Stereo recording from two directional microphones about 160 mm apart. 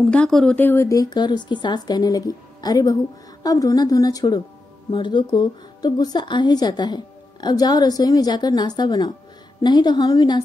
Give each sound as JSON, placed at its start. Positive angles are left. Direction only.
{"t": 0.1, "sound": "speech", "side_deg": 5}